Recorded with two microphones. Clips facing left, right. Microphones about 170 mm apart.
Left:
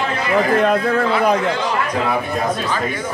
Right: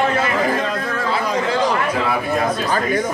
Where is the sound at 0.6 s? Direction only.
60° left (ahead or behind).